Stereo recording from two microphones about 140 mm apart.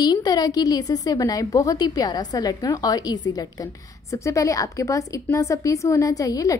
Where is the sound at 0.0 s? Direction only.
30° left (ahead or behind).